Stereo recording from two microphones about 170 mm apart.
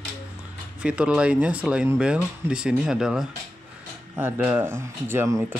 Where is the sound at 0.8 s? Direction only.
5° right (ahead or behind).